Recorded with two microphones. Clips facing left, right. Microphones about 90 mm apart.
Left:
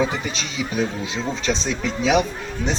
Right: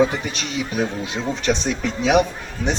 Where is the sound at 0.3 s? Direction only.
55° right (ahead or behind).